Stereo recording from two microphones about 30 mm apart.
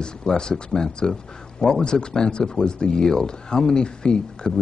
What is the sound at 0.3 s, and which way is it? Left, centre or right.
A man's voice, left.